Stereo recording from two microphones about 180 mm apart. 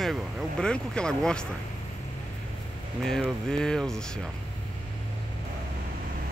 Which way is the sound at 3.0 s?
5° left (ahead or behind).